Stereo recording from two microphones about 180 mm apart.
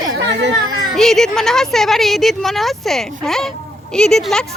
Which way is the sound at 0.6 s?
25° right (ahead or behind).